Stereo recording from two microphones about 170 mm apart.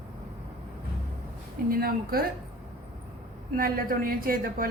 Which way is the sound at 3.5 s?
55° right (ahead or behind).